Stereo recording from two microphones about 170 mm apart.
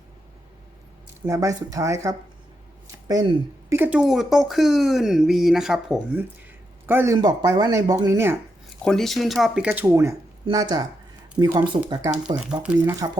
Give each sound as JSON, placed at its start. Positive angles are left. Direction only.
{"t": 1.3, "sound": "speech", "side_deg": -20}
{"t": 2.8, "sound": "a sound", "side_deg": -20}
{"t": 3.8, "sound": "speech", "side_deg": -5}
{"t": 7.2, "sound": "speech", "side_deg": -25}
{"t": 8.8, "sound": "speech", "side_deg": 5}
{"t": 12.6, "sound": "speech", "side_deg": -10}